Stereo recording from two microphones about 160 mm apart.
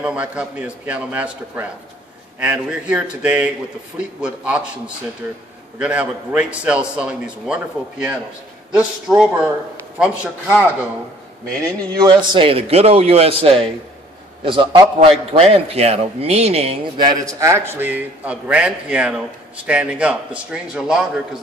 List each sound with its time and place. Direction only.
0.0 s a man's voice: 5° right (ahead or behind)
5.8 s a man's voice: 10° right (ahead or behind)
11.6 s a man's voice: 25° right (ahead or behind)
17.0 s a man's voice: 20° right (ahead or behind); by 21.4 s 5° right (ahead or behind)